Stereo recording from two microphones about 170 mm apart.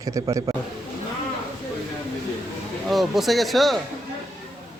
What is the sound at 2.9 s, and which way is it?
Speech, centre (ahead or behind).